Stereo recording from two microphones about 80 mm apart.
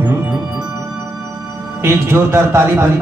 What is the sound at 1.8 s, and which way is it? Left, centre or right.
Speech, right.